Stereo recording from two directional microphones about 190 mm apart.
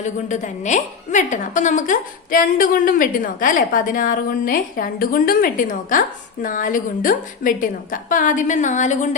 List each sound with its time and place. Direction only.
0.0 s a woman's voice: 40° left (ahead or behind)